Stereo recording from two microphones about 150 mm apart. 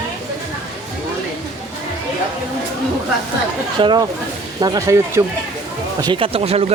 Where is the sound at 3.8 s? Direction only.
30° right (ahead or behind).